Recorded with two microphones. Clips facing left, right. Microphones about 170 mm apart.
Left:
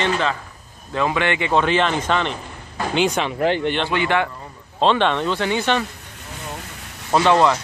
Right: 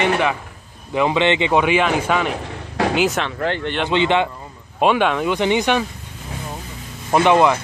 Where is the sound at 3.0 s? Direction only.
5° right (ahead or behind).